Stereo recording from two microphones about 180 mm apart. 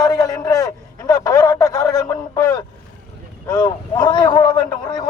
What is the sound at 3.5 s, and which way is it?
Speech, 20° left (ahead or behind).